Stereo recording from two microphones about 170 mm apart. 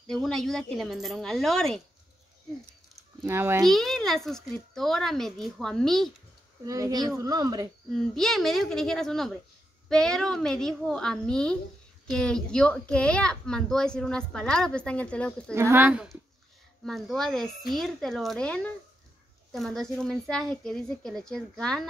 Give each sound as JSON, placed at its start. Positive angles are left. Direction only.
{"t": 0.1, "sound": "a woman's voice", "side_deg": 0}
{"t": 3.3, "sound": "speech", "side_deg": -15}
{"t": 3.6, "sound": "a woman's voice", "side_deg": 0}
{"t": 6.6, "sound": "speech", "side_deg": -20}
{"t": 7.9, "sound": "a woman's voice", "side_deg": 0}
{"t": 15.5, "sound": "a woman's voice", "side_deg": -15}